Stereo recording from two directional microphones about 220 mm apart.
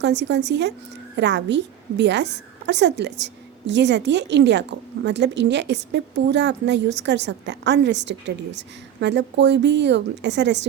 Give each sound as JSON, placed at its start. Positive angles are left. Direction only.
{"t": 0.0, "sound": "a woman's voice", "side_deg": -50}